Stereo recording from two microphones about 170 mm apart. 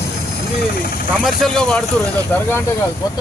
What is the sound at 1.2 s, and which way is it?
Speech, 5° left (ahead or behind).